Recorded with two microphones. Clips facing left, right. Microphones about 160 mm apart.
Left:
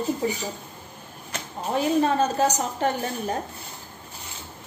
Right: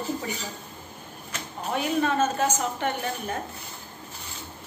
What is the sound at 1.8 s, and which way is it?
A woman's voice, 35° left (ahead or behind).